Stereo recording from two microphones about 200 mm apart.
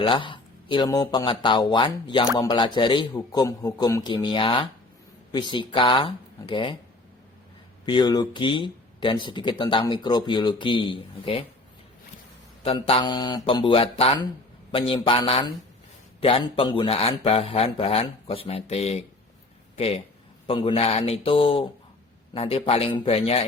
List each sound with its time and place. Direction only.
0.0 s speech: 25° left (ahead or behind)
7.9 s speech: 20° left (ahead or behind)
12.6 s speech: 25° left (ahead or behind)